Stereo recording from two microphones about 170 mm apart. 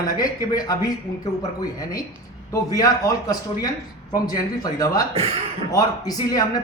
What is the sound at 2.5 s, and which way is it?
Speech, 20° left (ahead or behind).